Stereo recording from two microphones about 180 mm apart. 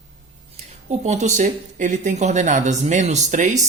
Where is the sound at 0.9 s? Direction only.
40° right (ahead or behind).